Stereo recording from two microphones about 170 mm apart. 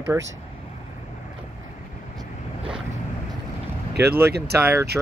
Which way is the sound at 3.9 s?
75° right (ahead or behind).